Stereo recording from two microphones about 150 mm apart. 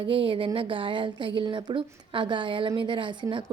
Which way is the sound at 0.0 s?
35° right (ahead or behind).